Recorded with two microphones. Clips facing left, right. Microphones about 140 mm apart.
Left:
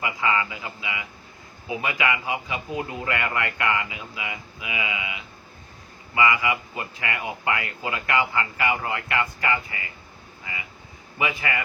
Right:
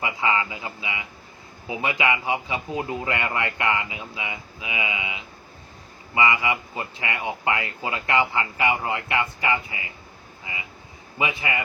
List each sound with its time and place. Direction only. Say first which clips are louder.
0.0 s speech: right 1 dB; 25° right (ahead or behind)